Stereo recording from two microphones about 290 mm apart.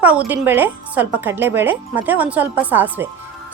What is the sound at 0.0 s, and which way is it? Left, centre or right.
A woman's voice, centre.